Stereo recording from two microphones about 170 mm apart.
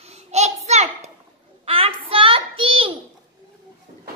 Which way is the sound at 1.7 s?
35° right (ahead or behind).